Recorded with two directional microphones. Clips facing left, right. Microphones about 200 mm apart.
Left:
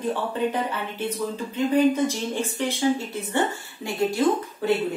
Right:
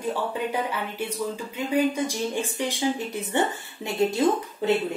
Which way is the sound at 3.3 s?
20° right (ahead or behind).